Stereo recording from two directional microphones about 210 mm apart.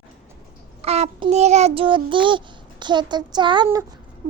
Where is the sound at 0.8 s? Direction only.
30° right (ahead or behind).